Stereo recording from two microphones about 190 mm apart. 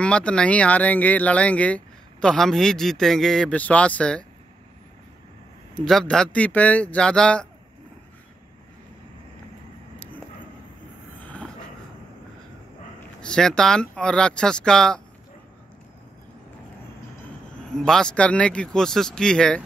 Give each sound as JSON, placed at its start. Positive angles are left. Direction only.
{"t": 0.0, "sound": "speech", "side_deg": 5}
{"t": 5.8, "sound": "speech", "side_deg": 5}
{"t": 11.1, "sound": "a sound", "side_deg": 5}
{"t": 13.2, "sound": "speech", "side_deg": 5}
{"t": 17.7, "sound": "speech", "side_deg": 5}